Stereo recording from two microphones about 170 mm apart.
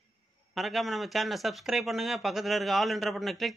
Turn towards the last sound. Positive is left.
turn(degrees=0)  # may be behind; listen again after turning